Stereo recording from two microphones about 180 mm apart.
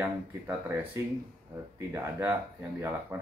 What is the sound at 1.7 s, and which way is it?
Speech, 10° right (ahead or behind).